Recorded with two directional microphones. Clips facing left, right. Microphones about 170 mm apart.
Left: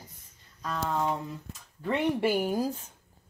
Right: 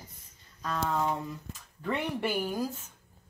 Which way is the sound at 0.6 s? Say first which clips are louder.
Even; 10° left (ahead or behind).